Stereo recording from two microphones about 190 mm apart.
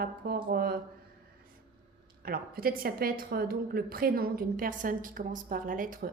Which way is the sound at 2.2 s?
50° right (ahead or behind).